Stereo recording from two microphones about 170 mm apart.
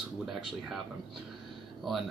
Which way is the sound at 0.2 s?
Centre (ahead or behind).